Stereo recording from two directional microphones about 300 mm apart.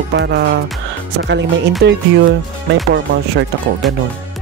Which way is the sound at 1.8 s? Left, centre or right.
Right.